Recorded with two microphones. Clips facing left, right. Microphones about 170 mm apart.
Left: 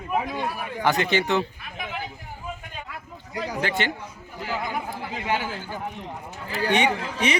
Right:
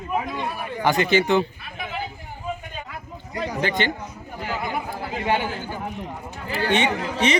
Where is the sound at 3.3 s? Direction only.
5° left (ahead or behind).